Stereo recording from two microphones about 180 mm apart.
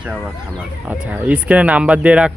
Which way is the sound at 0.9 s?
10° right (ahead or behind).